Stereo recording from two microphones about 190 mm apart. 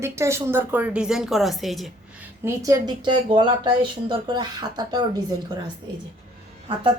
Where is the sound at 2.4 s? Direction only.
15° right (ahead or behind).